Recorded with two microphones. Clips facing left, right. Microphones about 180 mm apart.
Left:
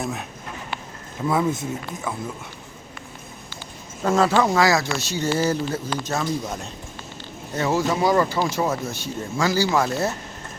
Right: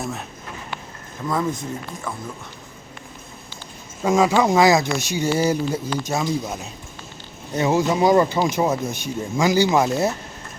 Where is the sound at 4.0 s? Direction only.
10° right (ahead or behind).